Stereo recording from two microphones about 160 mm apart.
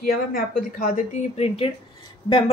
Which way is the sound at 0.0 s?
65° left (ahead or behind).